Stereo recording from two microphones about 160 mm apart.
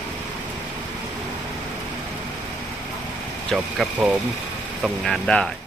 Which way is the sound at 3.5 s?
Centre (ahead or behind).